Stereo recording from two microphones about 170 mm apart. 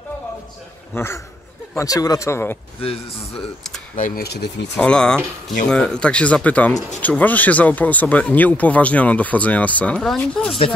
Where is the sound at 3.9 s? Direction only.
50° left (ahead or behind).